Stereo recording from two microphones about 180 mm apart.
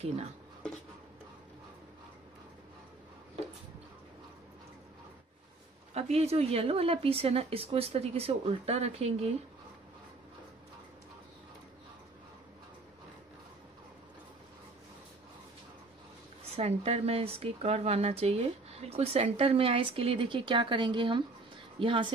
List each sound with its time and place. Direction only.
5.9 s speech: 35° right (ahead or behind)
16.5 s a woman's voice: 35° right (ahead or behind)